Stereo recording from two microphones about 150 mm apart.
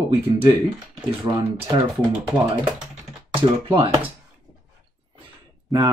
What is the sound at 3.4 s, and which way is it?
Speech, 35° right (ahead or behind).